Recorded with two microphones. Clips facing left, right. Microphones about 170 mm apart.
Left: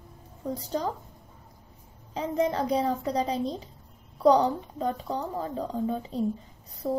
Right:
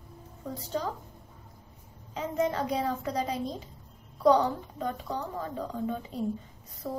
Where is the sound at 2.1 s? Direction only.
35° left (ahead or behind).